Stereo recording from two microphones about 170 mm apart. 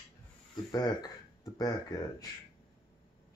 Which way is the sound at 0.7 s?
25° left (ahead or behind).